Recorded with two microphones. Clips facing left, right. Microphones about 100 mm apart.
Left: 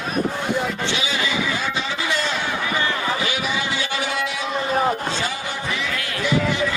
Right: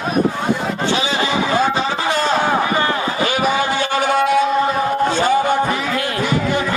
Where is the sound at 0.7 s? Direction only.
35° right (ahead or behind).